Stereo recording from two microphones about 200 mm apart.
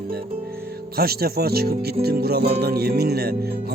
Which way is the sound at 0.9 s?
50° right (ahead or behind).